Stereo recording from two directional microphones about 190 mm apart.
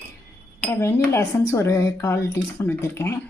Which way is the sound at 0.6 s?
15° left (ahead or behind).